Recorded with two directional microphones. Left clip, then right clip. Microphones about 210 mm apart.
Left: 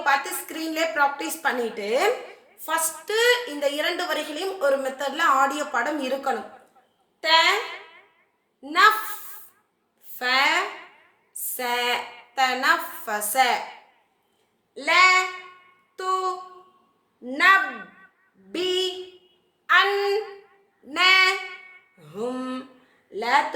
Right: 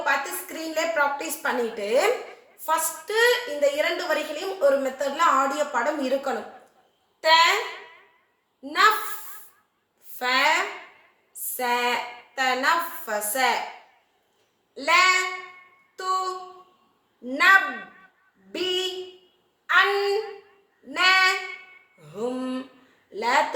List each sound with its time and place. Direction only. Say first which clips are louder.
0.0 s a woman's voice: left 2 dB; 40° left (ahead or behind)
10.2 s speech: left 1 dB; 40° left (ahead or behind)
11.5 s a woman's voice: right 1 dB; 40° left (ahead or behind)
14.8 s a woman's voice: left 2 dB; 35° left (ahead or behind)
18.5 s a sound: left 1 dB; 40° left (ahead or behind)
20.9 s child singing: left 1 dB; 40° left (ahead or behind)
22.1 s a sound: even; 40° left (ahead or behind)
23.1 s a woman's voice: left 1 dB; 35° left (ahead or behind)